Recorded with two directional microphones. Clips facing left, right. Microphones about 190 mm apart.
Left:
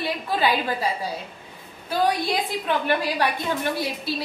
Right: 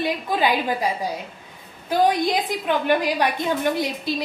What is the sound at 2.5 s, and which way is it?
A woman's voice, 15° right (ahead or behind).